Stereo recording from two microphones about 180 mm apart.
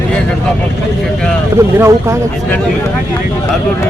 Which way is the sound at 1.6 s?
15° right (ahead or behind).